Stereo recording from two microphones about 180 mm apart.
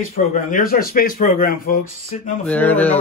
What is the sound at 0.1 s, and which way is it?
Speech, 45° left (ahead or behind).